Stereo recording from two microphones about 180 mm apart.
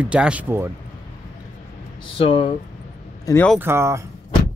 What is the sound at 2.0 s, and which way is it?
Speech, 30° left (ahead or behind).